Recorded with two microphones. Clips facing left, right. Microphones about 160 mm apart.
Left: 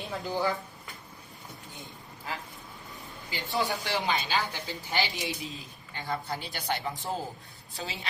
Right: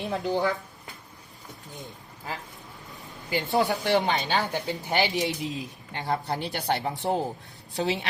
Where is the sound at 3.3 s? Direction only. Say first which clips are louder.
Right 6 dB; 55° right (ahead or behind).